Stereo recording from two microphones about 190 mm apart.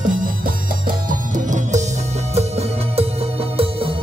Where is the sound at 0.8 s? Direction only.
45° right (ahead or behind).